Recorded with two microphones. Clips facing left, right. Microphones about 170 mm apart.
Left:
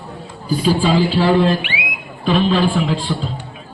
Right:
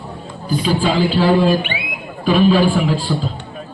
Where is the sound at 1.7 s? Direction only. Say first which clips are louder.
Even; 60° right (ahead or behind).